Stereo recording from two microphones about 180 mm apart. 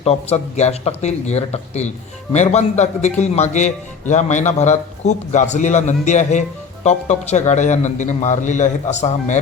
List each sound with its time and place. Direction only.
0.0 s speech: 35° left (ahead or behind)